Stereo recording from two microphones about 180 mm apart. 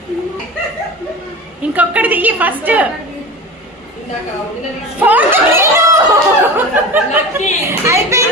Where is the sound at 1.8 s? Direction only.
10° right (ahead or behind).